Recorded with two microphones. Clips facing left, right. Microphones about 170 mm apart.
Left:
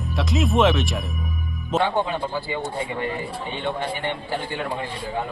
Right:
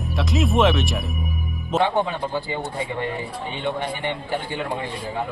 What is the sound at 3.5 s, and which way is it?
Speech, 15° right (ahead or behind).